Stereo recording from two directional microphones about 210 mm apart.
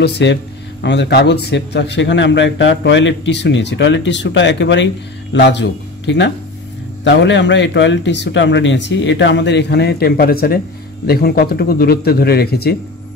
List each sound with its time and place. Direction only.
0.0 s a man's voice: 55° left (ahead or behind)